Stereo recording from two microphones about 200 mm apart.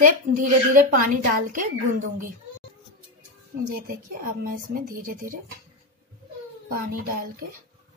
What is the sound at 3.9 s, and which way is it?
Speech, 45° right (ahead or behind).